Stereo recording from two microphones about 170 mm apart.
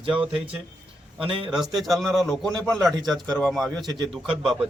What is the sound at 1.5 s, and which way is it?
A man's voice, centre (ahead or behind).